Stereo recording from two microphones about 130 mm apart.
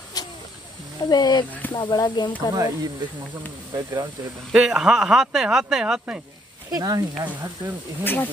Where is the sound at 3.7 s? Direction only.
25° right (ahead or behind).